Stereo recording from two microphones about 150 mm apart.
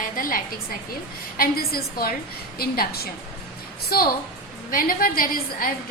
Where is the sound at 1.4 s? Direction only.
80° left.